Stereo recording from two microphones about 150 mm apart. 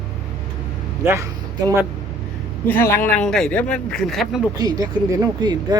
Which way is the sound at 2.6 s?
15° left (ahead or behind).